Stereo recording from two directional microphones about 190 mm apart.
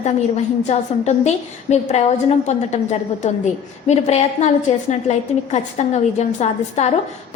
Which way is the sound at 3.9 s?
35° left (ahead or behind).